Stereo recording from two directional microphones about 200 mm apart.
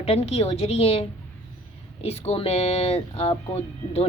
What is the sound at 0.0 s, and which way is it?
Speech, 30° left (ahead or behind).